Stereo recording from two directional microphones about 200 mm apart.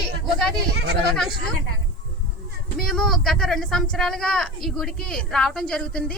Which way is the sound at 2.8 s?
Centre (ahead or behind).